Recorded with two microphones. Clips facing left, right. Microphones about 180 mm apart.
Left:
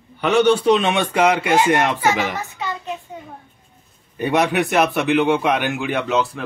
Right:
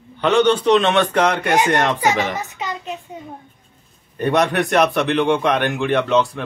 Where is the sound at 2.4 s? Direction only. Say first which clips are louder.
Even; 15° right (ahead or behind).